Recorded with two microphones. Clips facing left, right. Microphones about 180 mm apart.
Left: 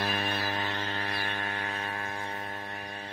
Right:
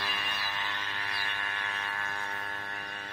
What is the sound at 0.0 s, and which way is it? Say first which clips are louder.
Music: left 7 dB; 45° left (ahead or behind).